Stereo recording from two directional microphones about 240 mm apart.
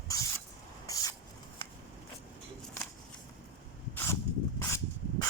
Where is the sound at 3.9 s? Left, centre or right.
Centre.